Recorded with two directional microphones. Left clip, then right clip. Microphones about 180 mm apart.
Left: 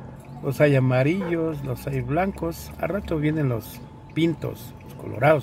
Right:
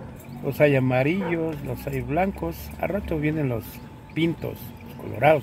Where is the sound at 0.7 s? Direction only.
60° left (ahead or behind).